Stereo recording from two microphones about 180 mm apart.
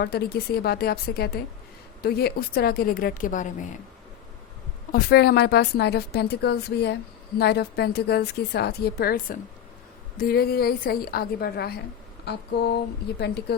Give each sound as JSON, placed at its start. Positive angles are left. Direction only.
{"t": 0.0, "sound": "a woman's voice", "side_deg": 60}
{"t": 4.9, "sound": "a woman's voice", "side_deg": 60}